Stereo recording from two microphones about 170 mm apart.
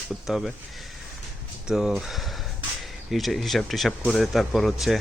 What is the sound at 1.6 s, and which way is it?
Speech, centre (ahead or behind).